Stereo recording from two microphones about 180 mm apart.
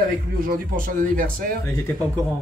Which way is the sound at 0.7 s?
50° right (ahead or behind).